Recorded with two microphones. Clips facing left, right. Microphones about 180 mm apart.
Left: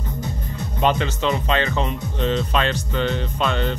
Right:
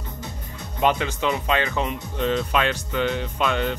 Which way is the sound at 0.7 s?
10° right (ahead or behind).